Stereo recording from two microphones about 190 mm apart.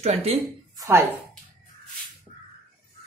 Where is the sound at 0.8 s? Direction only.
15° right (ahead or behind).